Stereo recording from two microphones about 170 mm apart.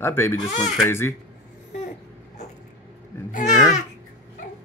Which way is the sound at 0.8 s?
15° left (ahead or behind).